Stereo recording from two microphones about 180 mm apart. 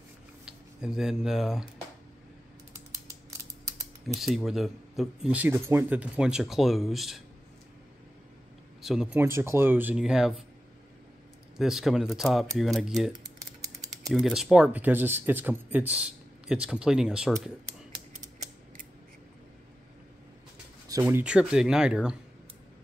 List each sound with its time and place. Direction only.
0.5 s speech: 5° right (ahead or behind)
4.1 s speech: centre (ahead or behind)
8.8 s speech: centre (ahead or behind)
9.2 s speech: 15° right (ahead or behind)
11.5 s speech: centre (ahead or behind)
13.1 s typing: 20° right (ahead or behind)
14.1 s speech: centre (ahead or behind)
18.2 s mechanisms: 45° right (ahead or behind)
21.0 s speech: 10° right (ahead or behind)